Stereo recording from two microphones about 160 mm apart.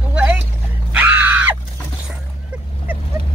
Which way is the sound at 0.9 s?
10° right (ahead or behind).